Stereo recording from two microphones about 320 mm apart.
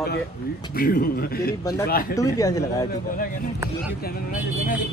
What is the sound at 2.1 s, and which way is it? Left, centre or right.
Speech, centre.